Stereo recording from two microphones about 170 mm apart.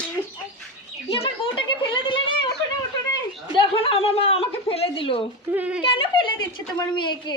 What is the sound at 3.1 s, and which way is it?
A woman's voice, 30° left (ahead or behind).